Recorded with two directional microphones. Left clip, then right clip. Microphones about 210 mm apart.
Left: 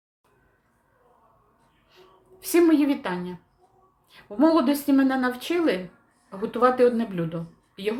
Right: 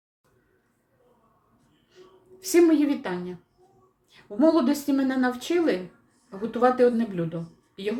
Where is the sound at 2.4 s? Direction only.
Centre (ahead or behind).